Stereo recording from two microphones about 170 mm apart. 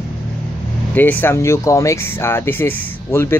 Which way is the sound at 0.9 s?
10° left (ahead or behind).